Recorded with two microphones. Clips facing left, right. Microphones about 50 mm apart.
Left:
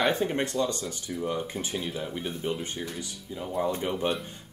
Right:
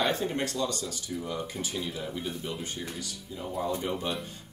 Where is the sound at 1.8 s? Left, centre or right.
Centre.